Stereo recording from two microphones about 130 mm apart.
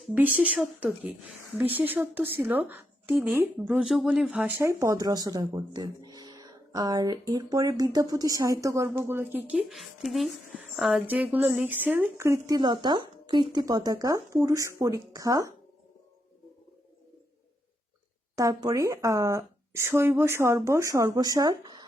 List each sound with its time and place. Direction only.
0.1 s speech: 15° right (ahead or behind)
11.0 s speech: 10° right (ahead or behind)
18.3 s speech: 25° right (ahead or behind)